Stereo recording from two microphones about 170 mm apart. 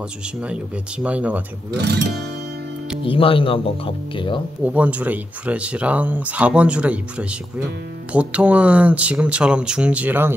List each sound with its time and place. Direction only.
1.0 s speech: 10° right (ahead or behind)
1.8 s speech: 80° right
3.0 s speech: 30° left (ahead or behind)
4.6 s speech: 10° right (ahead or behind)